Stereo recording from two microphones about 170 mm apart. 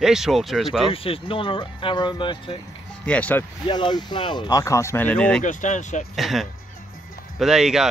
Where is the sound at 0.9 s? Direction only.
35° left (ahead or behind).